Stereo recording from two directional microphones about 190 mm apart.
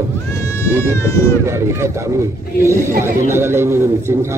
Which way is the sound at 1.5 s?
15° right (ahead or behind).